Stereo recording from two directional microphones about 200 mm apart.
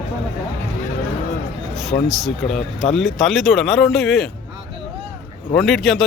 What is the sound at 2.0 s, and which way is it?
Speech, centre (ahead or behind).